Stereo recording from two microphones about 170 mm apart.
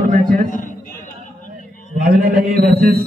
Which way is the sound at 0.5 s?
50° left (ahead or behind).